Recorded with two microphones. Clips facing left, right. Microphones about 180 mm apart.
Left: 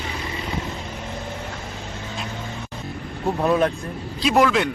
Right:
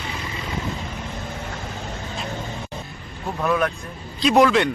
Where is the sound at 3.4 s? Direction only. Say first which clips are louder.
Left 2 dB; 30° left (ahead or behind).